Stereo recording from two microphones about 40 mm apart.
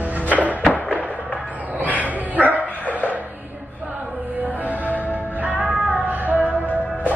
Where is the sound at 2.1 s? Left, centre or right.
Right.